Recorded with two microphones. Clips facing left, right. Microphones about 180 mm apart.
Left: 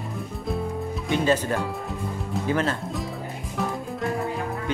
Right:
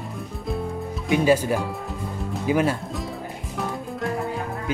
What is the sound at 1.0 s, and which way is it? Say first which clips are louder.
Speech: right 4 dB; 10° right (ahead or behind).